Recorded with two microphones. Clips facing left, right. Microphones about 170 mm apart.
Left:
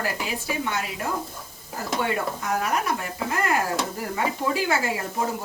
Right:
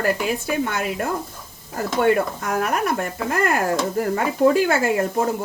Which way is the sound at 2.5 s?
55° right (ahead or behind).